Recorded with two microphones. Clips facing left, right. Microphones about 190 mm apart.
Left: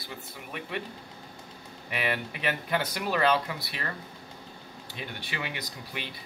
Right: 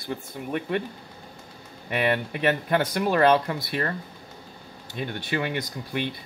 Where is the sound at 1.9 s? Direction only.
50° right (ahead or behind).